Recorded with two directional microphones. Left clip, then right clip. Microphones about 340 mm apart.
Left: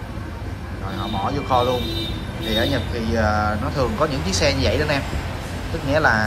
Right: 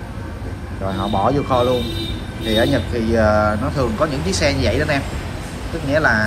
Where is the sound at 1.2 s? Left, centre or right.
Centre.